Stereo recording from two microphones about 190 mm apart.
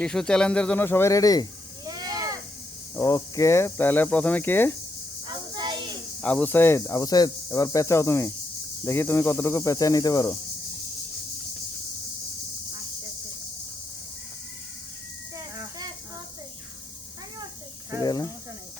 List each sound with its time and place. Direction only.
0.0 s speech: 5° left (ahead or behind)
1.8 s sheep: 20° right (ahead or behind)
2.9 s speech: 20° left (ahead or behind)
5.5 s a sound: 25° right (ahead or behind)
6.2 s speech: 10° left (ahead or behind)
18.0 s snake: 20° left (ahead or behind)